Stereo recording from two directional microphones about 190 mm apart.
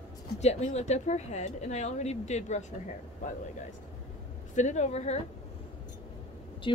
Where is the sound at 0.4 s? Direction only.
35° left (ahead or behind).